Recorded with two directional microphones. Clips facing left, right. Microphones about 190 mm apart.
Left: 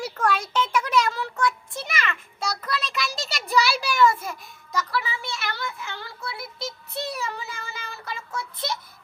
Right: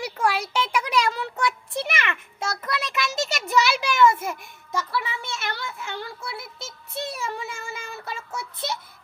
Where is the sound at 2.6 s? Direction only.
20° right (ahead or behind).